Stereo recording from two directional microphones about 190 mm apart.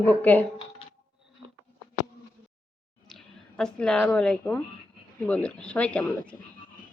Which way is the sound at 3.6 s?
5° left (ahead or behind).